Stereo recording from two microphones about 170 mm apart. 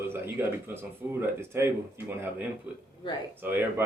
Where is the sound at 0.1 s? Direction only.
15° right (ahead or behind).